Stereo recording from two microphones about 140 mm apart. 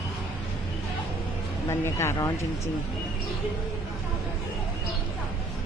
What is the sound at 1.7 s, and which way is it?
Speech, 20° left (ahead or behind).